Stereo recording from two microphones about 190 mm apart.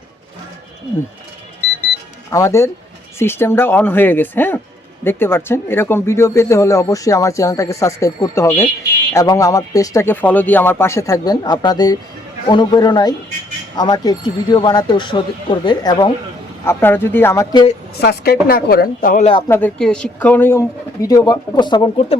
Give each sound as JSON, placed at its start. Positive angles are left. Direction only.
{"t": 2.3, "sound": "speech", "side_deg": 15}
{"t": 16.6, "sound": "speech", "side_deg": 10}
{"t": 18.0, "sound": "a woman's voice", "side_deg": 60}
{"t": 19.2, "sound": "speech", "side_deg": 30}
{"t": 19.5, "sound": "speech", "side_deg": 10}